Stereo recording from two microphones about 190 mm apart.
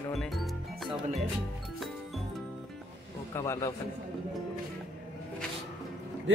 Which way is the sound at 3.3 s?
15° left (ahead or behind).